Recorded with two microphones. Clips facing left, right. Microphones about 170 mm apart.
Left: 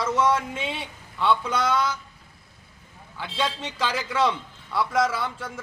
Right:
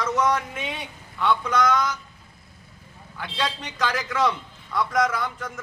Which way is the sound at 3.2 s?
5° left (ahead or behind).